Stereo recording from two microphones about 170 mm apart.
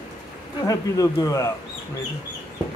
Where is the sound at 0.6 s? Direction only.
20° left (ahead or behind).